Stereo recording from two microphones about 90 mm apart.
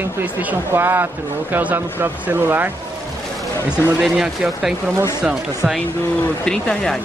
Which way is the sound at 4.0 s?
5° right (ahead or behind).